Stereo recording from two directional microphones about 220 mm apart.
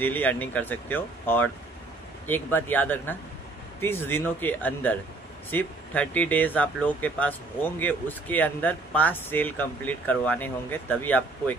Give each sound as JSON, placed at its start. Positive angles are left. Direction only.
{"t": 0.0, "sound": "speech", "side_deg": 10}